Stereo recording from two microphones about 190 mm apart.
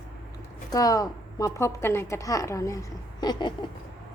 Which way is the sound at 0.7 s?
20° left (ahead or behind).